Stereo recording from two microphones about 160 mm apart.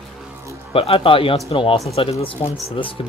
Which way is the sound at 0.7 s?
35° left (ahead or behind).